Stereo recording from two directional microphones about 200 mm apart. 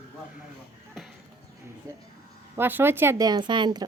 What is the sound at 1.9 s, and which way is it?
Music, 15° right (ahead or behind).